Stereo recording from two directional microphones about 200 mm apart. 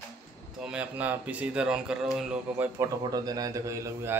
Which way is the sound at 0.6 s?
5° right (ahead or behind).